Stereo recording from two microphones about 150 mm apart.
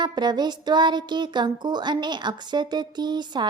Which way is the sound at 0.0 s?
30° right (ahead or behind).